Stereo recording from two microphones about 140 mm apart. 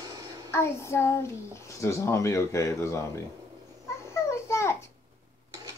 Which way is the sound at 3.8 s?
20° left (ahead or behind).